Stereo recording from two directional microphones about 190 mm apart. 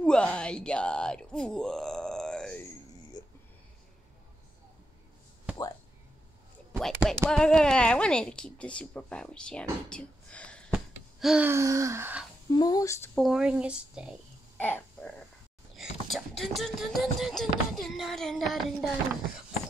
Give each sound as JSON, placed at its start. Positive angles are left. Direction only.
{"t": 0.0, "sound": "a sound", "side_deg": 5}
{"t": 6.8, "sound": "speech", "side_deg": 0}
{"t": 12.4, "sound": "speech", "side_deg": 20}
{"t": 13.2, "sound": "speech", "side_deg": -5}
{"t": 14.6, "sound": "a sound", "side_deg": 10}
{"t": 15.7, "sound": "beatboxing", "side_deg": 0}